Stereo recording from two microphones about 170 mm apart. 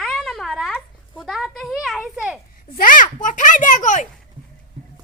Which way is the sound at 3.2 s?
50° left (ahead or behind).